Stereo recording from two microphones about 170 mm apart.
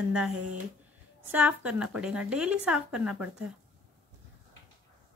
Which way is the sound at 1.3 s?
10° right (ahead or behind).